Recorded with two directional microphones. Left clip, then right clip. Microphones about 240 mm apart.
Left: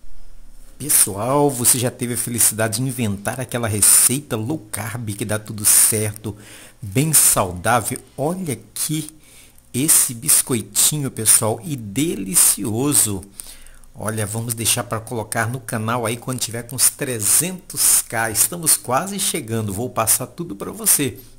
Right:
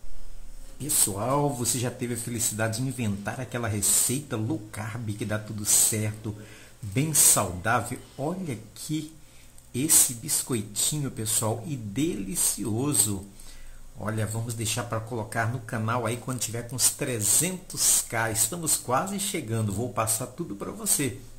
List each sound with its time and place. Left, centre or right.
1.1 s speech: left
10.4 s speech: left